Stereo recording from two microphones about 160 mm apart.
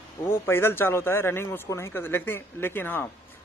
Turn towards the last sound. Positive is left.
turn(degrees=15)  # may be behind; listen again after turning